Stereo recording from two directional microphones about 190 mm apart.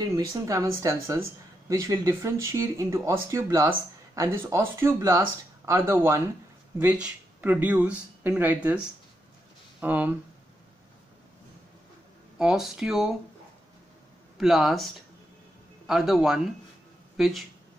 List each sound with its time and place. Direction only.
0.0 s speech: 15° right (ahead or behind)
9.8 s speech: 10° right (ahead or behind)
12.4 s speech: 5° right (ahead or behind)
14.4 s speech: centre (ahead or behind)
15.9 s speech: centre (ahead or behind)